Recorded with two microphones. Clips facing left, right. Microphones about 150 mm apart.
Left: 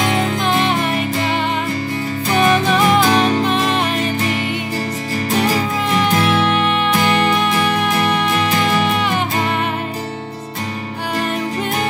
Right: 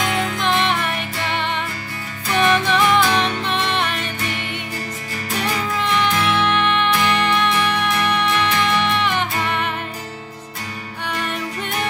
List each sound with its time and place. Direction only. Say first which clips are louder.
0.0 s music: left 4 dB; 25° left (ahead or behind)
2.2 s music: left 2 dB; 30° left (ahead or behind)
5.4 s music: left 2 dB; 35° left (ahead or behind)